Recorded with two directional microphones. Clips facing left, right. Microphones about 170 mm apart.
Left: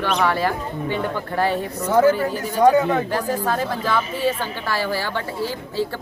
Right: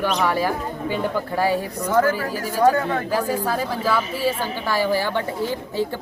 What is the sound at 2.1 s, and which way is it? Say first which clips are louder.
Speech: left 2 dB; 5° right (ahead or behind).